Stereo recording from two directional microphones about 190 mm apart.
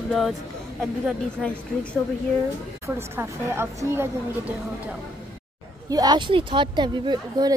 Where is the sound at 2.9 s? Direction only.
15° right (ahead or behind).